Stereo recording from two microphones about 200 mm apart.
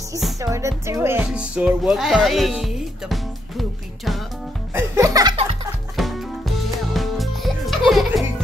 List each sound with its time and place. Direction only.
0.4 s speech: 15° right (ahead or behind)
4.7 s music: 15° right (ahead or behind)
5.9 s music: centre (ahead or behind)